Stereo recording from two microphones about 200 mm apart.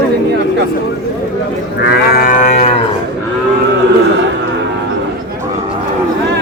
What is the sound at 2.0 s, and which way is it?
Livestock, 45° left (ahead or behind).